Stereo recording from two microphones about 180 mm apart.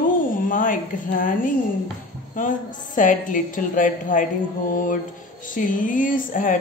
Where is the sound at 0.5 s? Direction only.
45° left (ahead or behind).